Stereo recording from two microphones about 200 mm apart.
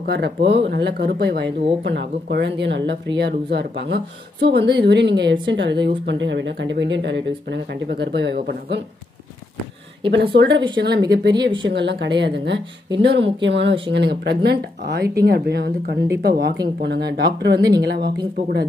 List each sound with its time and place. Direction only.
0.0 s speech: 55° right (ahead or behind)
10.1 s speech: 65° right (ahead or behind)
11.3 s speech: 25° right (ahead or behind)
11.7 s speech: 60° right (ahead or behind)